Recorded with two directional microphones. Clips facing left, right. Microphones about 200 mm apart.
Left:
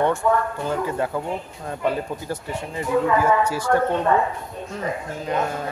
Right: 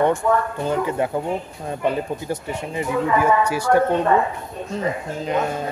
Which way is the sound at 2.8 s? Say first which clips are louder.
Even; 15° right (ahead or behind).